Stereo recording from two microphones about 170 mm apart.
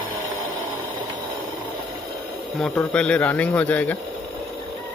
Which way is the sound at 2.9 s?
5° left (ahead or behind).